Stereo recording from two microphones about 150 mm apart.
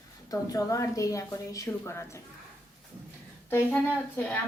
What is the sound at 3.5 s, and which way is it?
Speech, 15° left (ahead or behind).